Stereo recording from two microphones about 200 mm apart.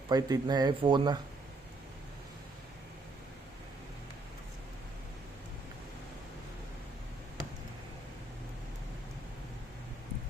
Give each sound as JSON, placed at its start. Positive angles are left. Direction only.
{"t": 0.1, "sound": "speech", "side_deg": -20}